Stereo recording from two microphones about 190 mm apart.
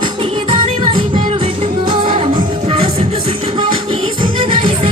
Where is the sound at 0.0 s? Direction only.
25° right (ahead or behind).